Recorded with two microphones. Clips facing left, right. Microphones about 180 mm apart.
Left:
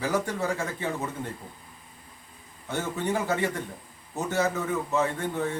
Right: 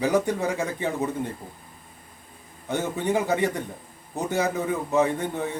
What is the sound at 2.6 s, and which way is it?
A man's voice, 15° right (ahead or behind).